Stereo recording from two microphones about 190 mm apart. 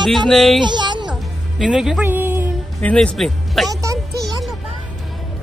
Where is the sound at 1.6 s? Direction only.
5° right (ahead or behind).